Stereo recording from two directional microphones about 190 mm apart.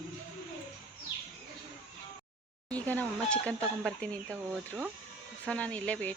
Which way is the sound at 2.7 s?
5° left (ahead or behind).